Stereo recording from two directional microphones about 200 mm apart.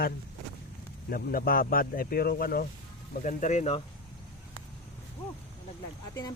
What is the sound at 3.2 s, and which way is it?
Speech, 35° left (ahead or behind).